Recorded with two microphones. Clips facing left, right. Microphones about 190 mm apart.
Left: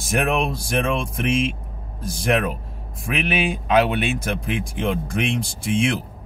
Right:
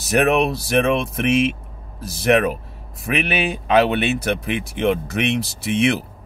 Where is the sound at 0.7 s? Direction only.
65° right (ahead or behind).